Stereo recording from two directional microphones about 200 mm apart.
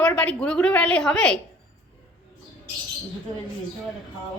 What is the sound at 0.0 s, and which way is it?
A woman's voice, 5° left (ahead or behind).